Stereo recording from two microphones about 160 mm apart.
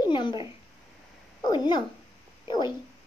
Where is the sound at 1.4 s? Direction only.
25° left (ahead or behind).